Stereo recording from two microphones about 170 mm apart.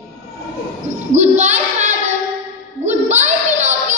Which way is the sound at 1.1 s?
45° right (ahead or behind).